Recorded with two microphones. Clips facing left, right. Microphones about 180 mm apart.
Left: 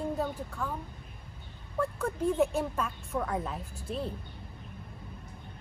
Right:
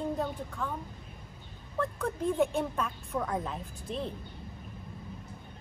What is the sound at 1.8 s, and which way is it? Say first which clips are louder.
Speech: left 1 dB; 5° left (ahead or behind).